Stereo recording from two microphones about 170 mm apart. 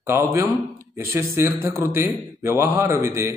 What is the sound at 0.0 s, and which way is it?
Speech, 15° right (ahead or behind).